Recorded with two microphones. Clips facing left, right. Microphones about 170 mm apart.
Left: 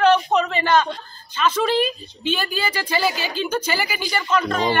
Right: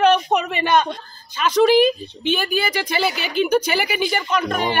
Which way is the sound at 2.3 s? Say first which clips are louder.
Right 3 dB; 15° right (ahead or behind).